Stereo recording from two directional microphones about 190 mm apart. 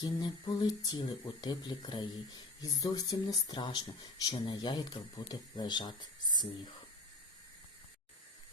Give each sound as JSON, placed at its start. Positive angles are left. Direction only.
{"t": 0.0, "sound": "speech", "side_deg": 20}